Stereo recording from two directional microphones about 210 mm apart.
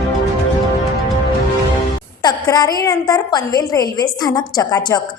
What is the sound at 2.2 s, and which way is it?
A woman's voice, 20° left (ahead or behind).